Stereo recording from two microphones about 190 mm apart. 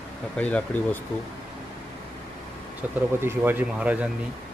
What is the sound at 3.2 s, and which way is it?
Speech, 10° right (ahead or behind).